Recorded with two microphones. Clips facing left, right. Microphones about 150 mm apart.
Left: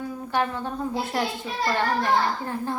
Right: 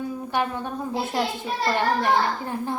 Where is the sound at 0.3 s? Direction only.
15° right (ahead or behind).